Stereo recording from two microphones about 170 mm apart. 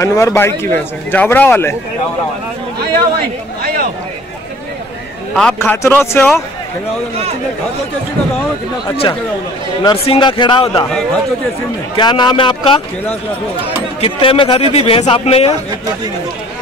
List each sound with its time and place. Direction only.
0.0 s a man's voice: 15° left (ahead or behind)
5.3 s a man's voice: 5° left (ahead or behind)
8.8 s a man's voice: 35° left (ahead or behind)
12.0 s a man's voice: 25° left (ahead or behind)
14.0 s a man's voice: 30° left (ahead or behind)